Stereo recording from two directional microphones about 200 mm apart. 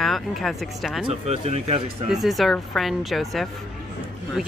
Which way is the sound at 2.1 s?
Centre (ahead or behind).